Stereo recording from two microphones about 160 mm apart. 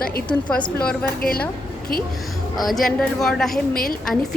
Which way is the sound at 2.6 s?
Centre (ahead or behind).